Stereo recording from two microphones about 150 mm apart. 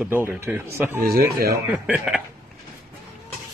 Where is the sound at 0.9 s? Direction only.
80° right.